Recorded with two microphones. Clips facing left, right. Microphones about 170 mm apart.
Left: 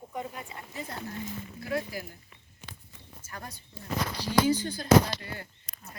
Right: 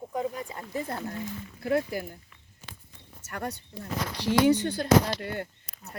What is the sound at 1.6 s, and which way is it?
Speech, 55° right (ahead or behind).